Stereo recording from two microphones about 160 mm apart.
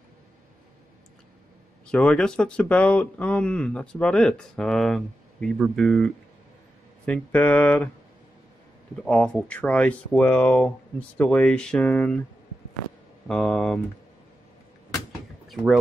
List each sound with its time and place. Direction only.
1.9 s speech: 5° left (ahead or behind)
9.0 s speech: 5° left (ahead or behind)
13.3 s speech: 5° left (ahead or behind)
15.4 s speech: centre (ahead or behind)